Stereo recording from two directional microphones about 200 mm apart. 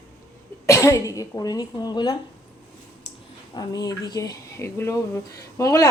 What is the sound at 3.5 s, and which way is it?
Speech, 20° left (ahead or behind).